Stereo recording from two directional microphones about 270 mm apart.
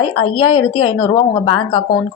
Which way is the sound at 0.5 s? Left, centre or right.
Left.